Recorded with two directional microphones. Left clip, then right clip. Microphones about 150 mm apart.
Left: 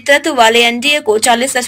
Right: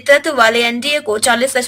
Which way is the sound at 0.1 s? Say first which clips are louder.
Left 2 dB; 10° left (ahead or behind).